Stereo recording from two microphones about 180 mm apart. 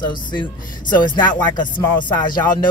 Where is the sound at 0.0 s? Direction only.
25° left (ahead or behind).